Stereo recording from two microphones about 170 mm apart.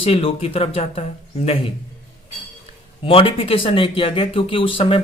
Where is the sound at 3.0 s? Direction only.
30° left (ahead or behind).